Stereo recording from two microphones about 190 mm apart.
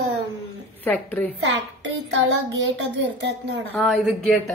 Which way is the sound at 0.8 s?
10° left (ahead or behind).